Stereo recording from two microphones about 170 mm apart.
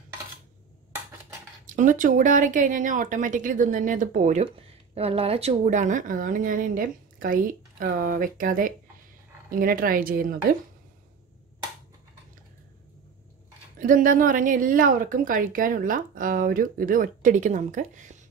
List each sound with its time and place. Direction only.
1.7 s a woman's voice: 50° right (ahead or behind)
13.7 s speech: 50° right (ahead or behind)